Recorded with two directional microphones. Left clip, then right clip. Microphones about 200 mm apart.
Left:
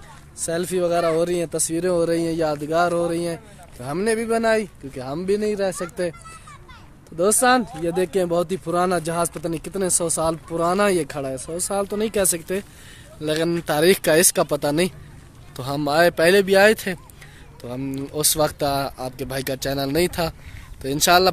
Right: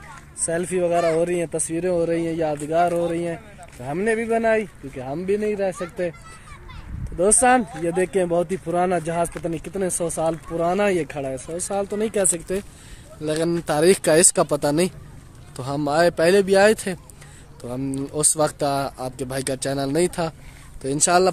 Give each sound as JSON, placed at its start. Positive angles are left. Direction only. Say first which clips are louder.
{"t": 0.5, "sound": "speech", "louder": "even", "side_deg": 5}
{"t": 7.2, "sound": "speech", "louder": "even", "side_deg": 0}